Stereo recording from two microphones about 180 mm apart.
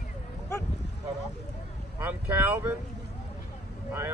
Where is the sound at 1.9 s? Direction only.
10° right (ahead or behind).